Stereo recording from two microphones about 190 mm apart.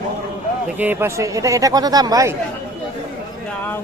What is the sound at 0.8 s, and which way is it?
Speech, 10° right (ahead or behind).